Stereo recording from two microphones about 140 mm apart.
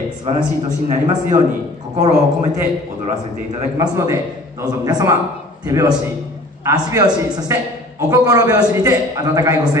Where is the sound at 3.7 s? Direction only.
25° right (ahead or behind).